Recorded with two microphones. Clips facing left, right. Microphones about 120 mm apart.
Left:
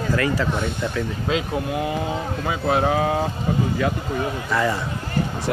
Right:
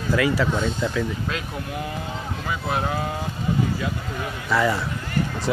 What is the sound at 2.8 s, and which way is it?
Speech, 60° left (ahead or behind).